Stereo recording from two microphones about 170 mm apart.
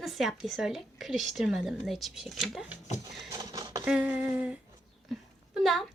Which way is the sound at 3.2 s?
20° right (ahead or behind).